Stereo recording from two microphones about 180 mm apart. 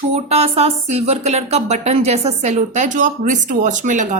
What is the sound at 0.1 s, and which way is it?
Speech, 35° right (ahead or behind).